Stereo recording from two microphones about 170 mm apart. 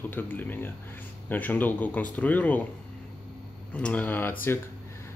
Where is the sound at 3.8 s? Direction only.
10° left (ahead or behind).